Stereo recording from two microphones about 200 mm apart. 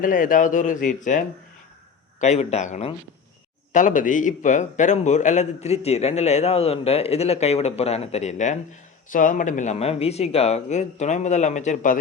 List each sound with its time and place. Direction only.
0.0 s a man's voice: 40° left (ahead or behind)
2.2 s a man's voice: 35° left (ahead or behind)